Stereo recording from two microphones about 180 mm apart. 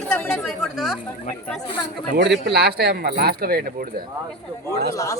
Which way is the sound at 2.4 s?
65° right (ahead or behind).